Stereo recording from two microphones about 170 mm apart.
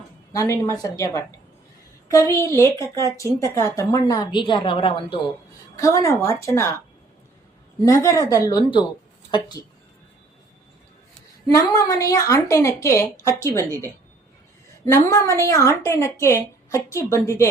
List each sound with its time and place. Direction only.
0.3 s a woman's voice: 20° left (ahead or behind)
7.9 s a woman's voice: 20° left (ahead or behind)
11.5 s a woman's voice: 20° left (ahead or behind)
15.1 s a woman's voice: 15° left (ahead or behind)